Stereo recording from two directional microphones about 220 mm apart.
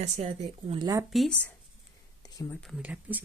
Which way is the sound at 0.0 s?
30° right (ahead or behind).